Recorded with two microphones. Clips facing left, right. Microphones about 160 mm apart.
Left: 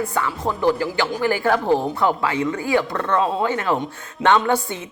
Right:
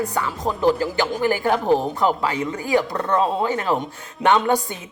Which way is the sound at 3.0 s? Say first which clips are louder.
Even; 35° right (ahead or behind).